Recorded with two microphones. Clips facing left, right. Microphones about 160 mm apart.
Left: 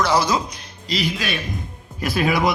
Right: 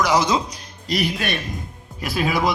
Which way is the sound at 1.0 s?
60° right (ahead or behind).